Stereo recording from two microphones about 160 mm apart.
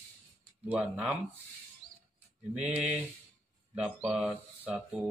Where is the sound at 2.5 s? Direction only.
5° right (ahead or behind).